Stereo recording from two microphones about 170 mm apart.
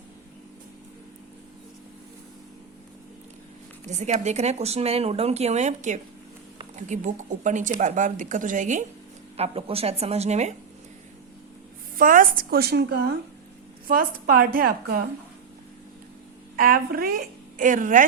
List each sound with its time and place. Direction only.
3.8 s speech: 45° right (ahead or behind)
9.4 s speech: 35° right (ahead or behind)
11.9 s a woman's voice: 55° right (ahead or behind)
16.6 s a woman's voice: 60° right (ahead or behind)